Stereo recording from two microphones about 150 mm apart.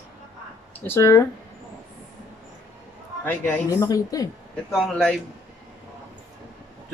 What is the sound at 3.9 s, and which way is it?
Speech, 25° left (ahead or behind).